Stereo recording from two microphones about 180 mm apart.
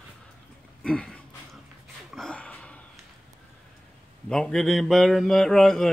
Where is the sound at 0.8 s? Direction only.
5° left (ahead or behind).